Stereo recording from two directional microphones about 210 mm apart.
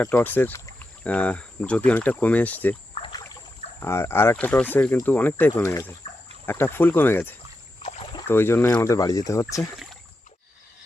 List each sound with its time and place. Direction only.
0.0 s speech: 10° left (ahead or behind)
2.9 s trickle: 25° left (ahead or behind)
3.8 s speech: 10° left (ahead or behind)
7.8 s rowboat: 25° left (ahead or behind)
8.3 s speech: 10° left (ahead or behind)